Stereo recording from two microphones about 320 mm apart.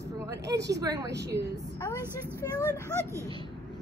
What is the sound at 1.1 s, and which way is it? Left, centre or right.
Speech, right.